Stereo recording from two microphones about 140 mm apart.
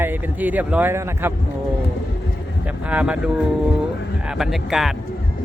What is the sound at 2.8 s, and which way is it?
Speech, 10° right (ahead or behind).